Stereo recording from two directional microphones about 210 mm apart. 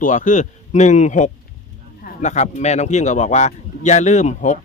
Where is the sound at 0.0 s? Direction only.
35° left (ahead or behind).